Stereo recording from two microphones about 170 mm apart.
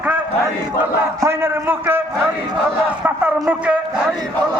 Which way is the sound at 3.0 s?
10° right (ahead or behind).